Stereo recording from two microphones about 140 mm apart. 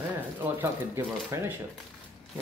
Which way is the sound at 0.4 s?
15° right (ahead or behind).